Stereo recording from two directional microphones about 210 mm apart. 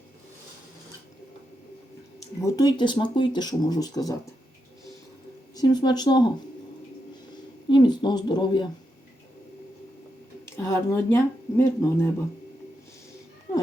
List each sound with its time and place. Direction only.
2.4 s speech: 15° left (ahead or behind)
5.5 s speech: 20° left (ahead or behind)
7.7 s speech: 20° left (ahead or behind)
10.4 s speech: 15° left (ahead or behind)